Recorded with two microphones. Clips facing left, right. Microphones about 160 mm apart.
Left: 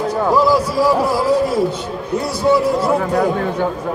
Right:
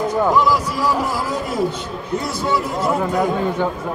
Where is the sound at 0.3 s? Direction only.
35° left (ahead or behind).